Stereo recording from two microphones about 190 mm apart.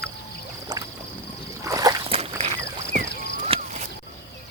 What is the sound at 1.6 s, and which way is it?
Splash, 15° right (ahead or behind).